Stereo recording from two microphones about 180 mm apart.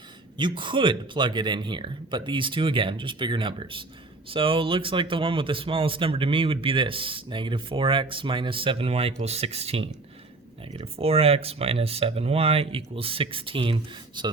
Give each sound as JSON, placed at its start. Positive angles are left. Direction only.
{"t": 0.3, "sound": "speech", "side_deg": -25}